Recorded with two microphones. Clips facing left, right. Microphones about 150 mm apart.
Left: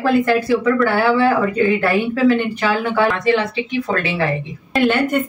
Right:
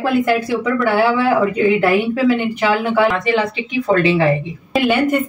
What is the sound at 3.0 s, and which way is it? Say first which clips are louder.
Speech: left 2 dB; 20° right (ahead or behind).